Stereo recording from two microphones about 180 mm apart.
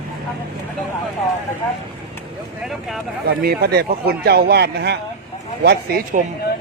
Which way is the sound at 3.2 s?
60° right (ahead or behind).